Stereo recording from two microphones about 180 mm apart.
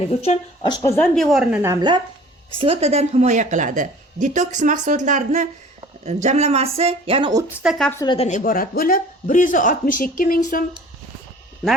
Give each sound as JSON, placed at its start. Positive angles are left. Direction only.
{"t": 0.0, "sound": "speech", "side_deg": 35}
{"t": 0.7, "sound": "a woman's voice", "side_deg": 20}
{"t": 0.9, "sound": "a woman's voice", "side_deg": 0}
{"t": 1.7, "sound": "a woman's voice", "side_deg": -25}
{"t": 7.6, "sound": "a woman's voice", "side_deg": 0}
{"t": 8.0, "sound": "a woman's voice", "side_deg": 25}
{"t": 8.3, "sound": "speech", "side_deg": 50}